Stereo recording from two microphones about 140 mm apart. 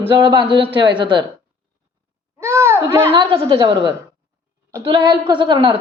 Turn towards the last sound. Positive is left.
turn(degrees=-35)  # may be behind; listen again after turning